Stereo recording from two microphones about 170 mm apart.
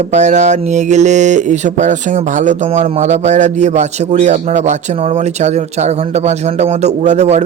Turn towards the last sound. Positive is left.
turn(degrees=-40)  # may be behind; listen again after turning